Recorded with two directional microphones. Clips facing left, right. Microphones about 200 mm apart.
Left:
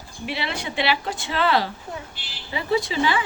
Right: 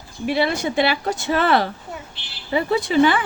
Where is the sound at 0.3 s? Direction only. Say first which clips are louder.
Right 9 dB; 45° right (ahead or behind).